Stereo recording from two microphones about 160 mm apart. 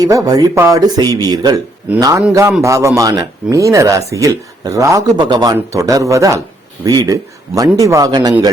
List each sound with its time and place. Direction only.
0.0 s speech: 20° right (ahead or behind)